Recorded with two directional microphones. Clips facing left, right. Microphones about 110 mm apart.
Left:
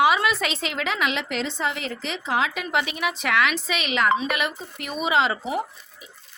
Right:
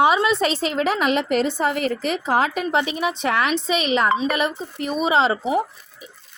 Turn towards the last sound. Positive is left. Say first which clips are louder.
# right 4 dB
turn(degrees=-35)  # may be behind; listen again after turning